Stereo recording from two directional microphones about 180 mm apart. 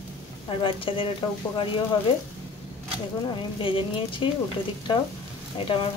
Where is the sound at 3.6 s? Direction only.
30° left (ahead or behind).